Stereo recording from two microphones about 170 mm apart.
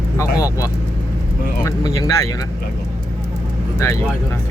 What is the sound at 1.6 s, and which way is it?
Speech, 20° left (ahead or behind).